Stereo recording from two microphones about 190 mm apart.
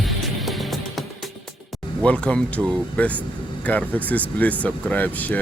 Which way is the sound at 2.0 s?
5° left (ahead or behind).